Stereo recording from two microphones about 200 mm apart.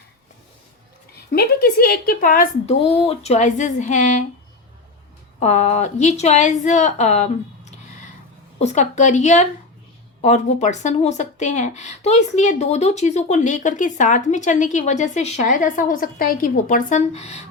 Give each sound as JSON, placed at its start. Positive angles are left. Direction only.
{"t": 1.3, "sound": "a woman's voice", "side_deg": 50}
{"t": 2.6, "sound": "speech", "side_deg": 30}
{"t": 5.4, "sound": "speech", "side_deg": 35}